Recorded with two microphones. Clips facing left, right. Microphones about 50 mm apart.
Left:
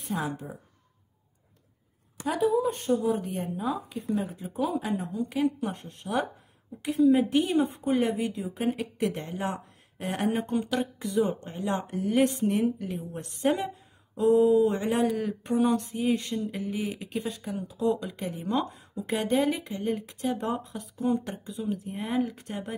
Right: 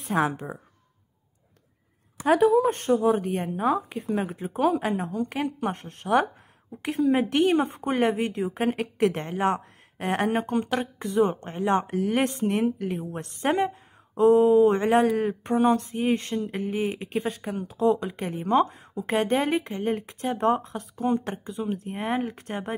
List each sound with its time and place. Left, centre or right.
0.1 s a woman's voice: right
2.2 s speech: right
3.9 s speech: right
4.8 s a woman's voice: right
17.9 s a woman's voice: right